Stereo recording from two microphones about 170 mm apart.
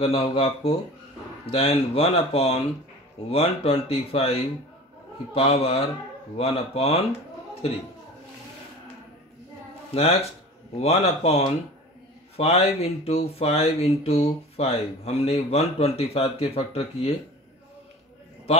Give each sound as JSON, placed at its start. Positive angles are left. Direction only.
{"t": 0.0, "sound": "speech", "side_deg": 35}
{"t": 10.8, "sound": "speech", "side_deg": 35}